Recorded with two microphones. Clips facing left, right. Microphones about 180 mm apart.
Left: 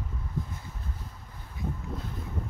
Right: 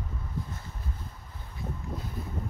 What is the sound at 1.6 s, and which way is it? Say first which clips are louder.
Boat: left 3 dB; 15° left (ahead or behind).